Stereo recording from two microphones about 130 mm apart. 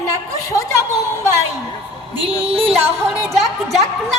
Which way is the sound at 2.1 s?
45° right (ahead or behind).